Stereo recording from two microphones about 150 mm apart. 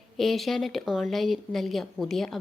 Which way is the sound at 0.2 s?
Centre (ahead or behind).